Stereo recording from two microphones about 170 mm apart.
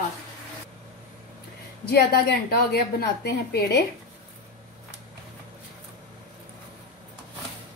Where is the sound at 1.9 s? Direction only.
70° left (ahead or behind).